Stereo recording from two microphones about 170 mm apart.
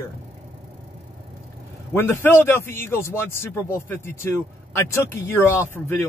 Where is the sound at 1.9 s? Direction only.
15° left (ahead or behind).